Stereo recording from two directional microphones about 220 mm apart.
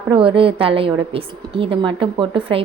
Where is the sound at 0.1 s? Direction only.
25° right (ahead or behind).